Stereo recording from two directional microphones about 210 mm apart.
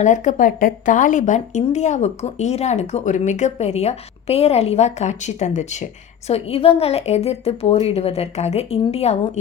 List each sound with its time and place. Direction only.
0.0 s speech: 35° left (ahead or behind)